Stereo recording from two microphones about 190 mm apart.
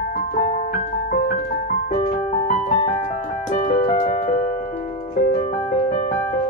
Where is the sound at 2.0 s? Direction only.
40° left (ahead or behind).